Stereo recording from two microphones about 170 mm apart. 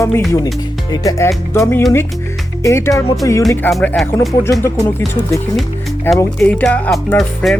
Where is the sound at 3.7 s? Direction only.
Centre (ahead or behind).